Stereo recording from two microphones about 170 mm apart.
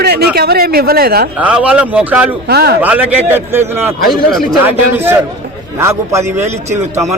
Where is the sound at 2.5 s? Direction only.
70° right (ahead or behind).